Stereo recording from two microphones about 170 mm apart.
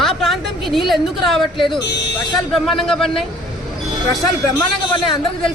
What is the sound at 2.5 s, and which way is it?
Speech, centre (ahead or behind).